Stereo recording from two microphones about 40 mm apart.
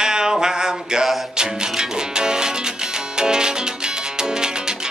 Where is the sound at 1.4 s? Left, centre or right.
Centre.